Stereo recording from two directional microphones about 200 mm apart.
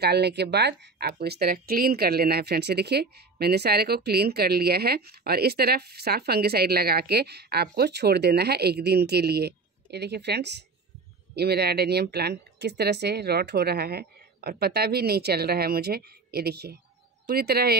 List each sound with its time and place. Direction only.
0.0 s speech: 55° right (ahead or behind)